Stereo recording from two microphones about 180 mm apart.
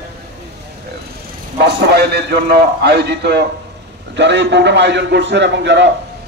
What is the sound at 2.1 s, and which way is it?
A man's voice, 65° right (ahead or behind).